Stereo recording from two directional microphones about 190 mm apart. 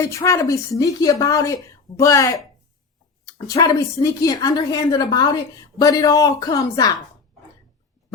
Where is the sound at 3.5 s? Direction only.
20° left (ahead or behind).